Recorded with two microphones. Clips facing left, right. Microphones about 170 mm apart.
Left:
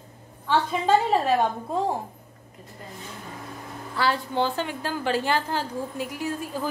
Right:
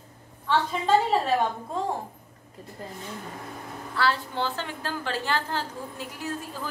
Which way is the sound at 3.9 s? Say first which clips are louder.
Left 2 dB; 15° left (ahead or behind).